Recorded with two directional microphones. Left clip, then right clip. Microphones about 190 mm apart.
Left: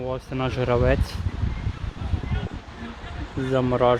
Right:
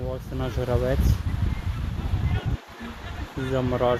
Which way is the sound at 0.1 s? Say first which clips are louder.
Left 4 dB; 20° left (ahead or behind).